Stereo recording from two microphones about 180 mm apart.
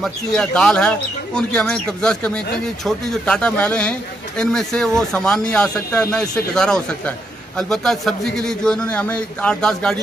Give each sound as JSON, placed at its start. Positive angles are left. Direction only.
{"t": 0.0, "sound": "speech", "side_deg": 5}